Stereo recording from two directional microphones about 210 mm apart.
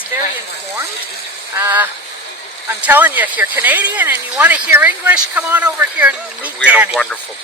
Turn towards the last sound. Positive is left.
turn(degrees=-5)  # may be behind; listen again after turning